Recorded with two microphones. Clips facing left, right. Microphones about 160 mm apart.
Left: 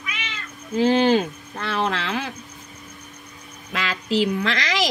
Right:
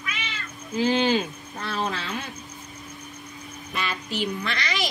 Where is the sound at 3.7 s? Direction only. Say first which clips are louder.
Left 7 dB; 90° left.